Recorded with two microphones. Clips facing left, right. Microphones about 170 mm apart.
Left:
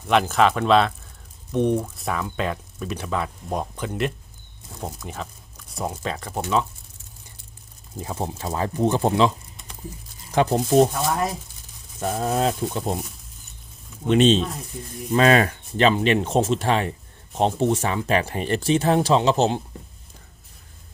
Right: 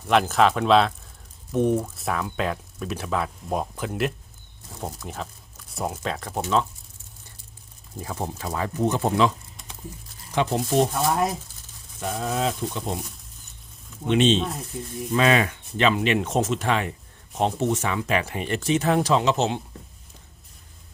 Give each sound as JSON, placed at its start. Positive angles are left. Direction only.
{"t": 0.1, "sound": "speech", "side_deg": 0}
{"t": 7.9, "sound": "speech", "side_deg": 20}
{"t": 10.3, "sound": "speech", "side_deg": 40}
{"t": 10.8, "sound": "speech", "side_deg": 0}
{"t": 11.9, "sound": "a sound", "side_deg": 45}
{"t": 12.7, "sound": "speech", "side_deg": 40}
{"t": 14.1, "sound": "speech", "side_deg": 40}
{"t": 14.3, "sound": "speech", "side_deg": 0}
{"t": 15.1, "sound": "speech", "side_deg": 40}